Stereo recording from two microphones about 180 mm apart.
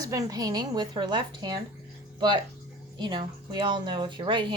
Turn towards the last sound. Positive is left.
turn(degrees=-25)  # may be behind; listen again after turning